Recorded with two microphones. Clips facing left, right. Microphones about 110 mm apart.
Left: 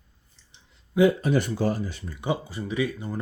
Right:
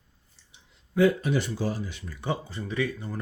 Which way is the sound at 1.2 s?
45° left (ahead or behind).